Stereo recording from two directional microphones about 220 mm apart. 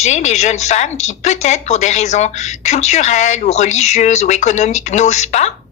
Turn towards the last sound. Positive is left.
turn(degrees=30)  # may be behind; listen again after turning